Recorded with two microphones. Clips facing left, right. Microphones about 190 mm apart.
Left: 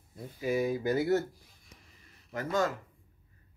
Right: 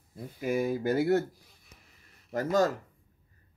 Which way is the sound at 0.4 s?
50° right (ahead or behind).